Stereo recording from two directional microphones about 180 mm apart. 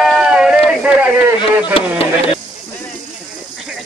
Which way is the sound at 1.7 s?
30° left (ahead or behind).